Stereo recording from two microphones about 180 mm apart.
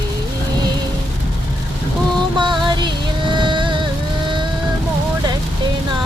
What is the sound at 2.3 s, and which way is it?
Music, 25° right (ahead or behind).